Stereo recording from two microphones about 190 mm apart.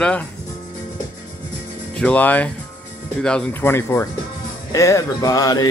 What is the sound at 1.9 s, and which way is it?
Speech, 5° left (ahead or behind).